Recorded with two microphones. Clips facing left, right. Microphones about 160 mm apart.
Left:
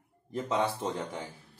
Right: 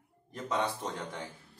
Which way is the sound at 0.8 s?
10° left (ahead or behind).